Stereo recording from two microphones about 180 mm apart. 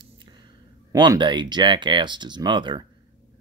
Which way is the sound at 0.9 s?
25° right (ahead or behind).